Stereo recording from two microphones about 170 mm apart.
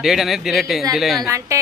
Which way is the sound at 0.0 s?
Centre (ahead or behind).